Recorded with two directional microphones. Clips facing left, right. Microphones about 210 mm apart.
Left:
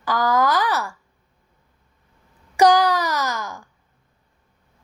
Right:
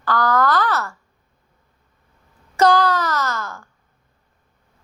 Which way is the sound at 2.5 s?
15° left (ahead or behind).